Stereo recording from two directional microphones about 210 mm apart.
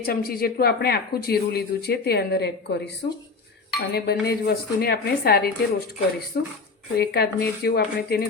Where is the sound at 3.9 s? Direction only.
50° left (ahead or behind).